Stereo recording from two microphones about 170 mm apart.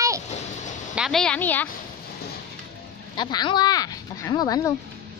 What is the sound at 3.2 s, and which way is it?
Speech, 25° left (ahead or behind).